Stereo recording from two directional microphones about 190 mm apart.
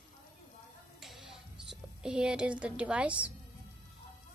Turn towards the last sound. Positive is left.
turn(degrees=-5)  # may be behind; listen again after turning